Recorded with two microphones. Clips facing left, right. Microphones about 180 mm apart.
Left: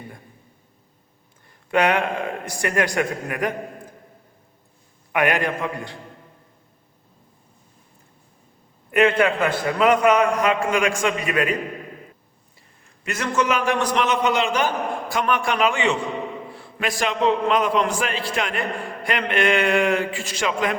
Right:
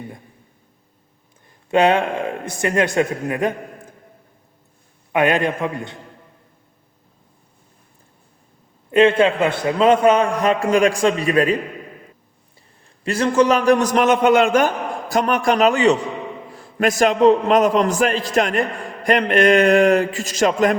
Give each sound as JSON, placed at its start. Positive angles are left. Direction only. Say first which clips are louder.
{"t": 1.7, "sound": "a man's voice", "louder": "right 4 dB", "side_deg": -25}
{"t": 5.1, "sound": "a man's voice", "louder": "right 4 dB", "side_deg": -25}
{"t": 8.9, "sound": "a man's voice", "louder": "right 4 dB", "side_deg": -25}
{"t": 13.1, "sound": "a man's voice", "louder": "right 7 dB", "side_deg": -30}
{"t": 15.1, "sound": "a man's voice", "louder": "right 6 dB", "side_deg": -40}